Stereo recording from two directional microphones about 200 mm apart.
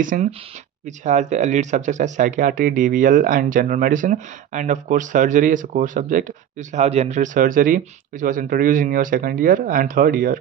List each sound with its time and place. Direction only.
0.0 s speech: 40° right (ahead or behind)